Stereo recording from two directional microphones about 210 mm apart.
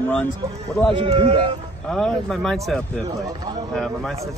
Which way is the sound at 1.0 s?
25° right (ahead or behind).